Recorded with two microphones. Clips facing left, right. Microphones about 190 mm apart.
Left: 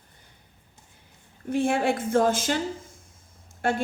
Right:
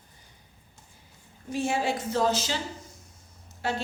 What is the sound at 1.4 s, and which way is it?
A woman's voice, 55° left (ahead or behind).